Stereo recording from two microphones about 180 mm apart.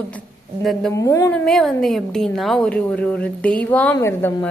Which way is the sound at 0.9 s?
15° left (ahead or behind).